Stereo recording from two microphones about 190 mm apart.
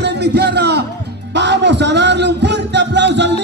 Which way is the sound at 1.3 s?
65° right (ahead or behind).